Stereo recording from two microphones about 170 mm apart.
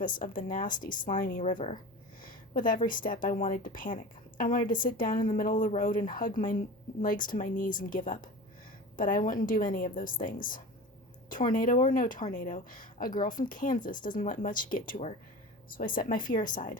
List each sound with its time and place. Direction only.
0.1 s a woman's voice: 55° left (ahead or behind)